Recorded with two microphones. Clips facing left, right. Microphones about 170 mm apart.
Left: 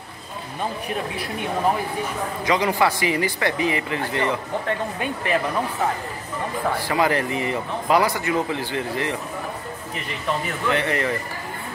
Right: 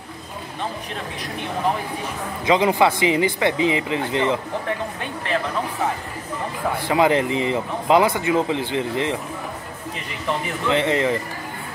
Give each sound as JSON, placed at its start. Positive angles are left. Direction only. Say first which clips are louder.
{"t": 2.4, "sound": "speech", "louder": "right 4 dB", "side_deg": -20}
{"t": 5.0, "sound": "speech", "louder": "left 2 dB", "side_deg": 10}
{"t": 6.9, "sound": "speech", "louder": "right 5 dB", "side_deg": -20}
{"t": 10.7, "sound": "speech", "louder": "right 4 dB", "side_deg": -20}